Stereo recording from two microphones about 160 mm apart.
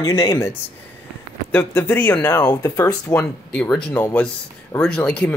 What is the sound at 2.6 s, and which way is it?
Speech, 20° left (ahead or behind).